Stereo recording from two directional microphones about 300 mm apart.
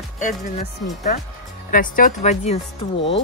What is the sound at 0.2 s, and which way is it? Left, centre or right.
Speech, left.